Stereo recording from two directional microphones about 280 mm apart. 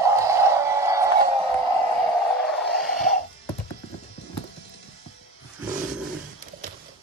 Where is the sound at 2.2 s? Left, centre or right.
Centre.